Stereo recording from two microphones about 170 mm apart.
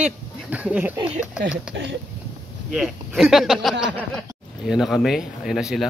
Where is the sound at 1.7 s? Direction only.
90° right.